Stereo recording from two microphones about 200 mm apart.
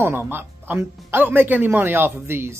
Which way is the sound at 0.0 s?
10° right (ahead or behind).